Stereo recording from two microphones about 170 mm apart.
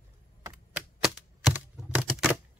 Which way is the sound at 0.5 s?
5° right (ahead or behind).